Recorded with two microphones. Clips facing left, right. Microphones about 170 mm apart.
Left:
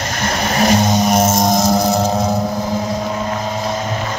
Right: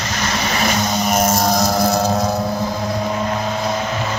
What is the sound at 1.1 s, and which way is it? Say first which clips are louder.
Music: left 3 dB; 25° left (ahead or behind).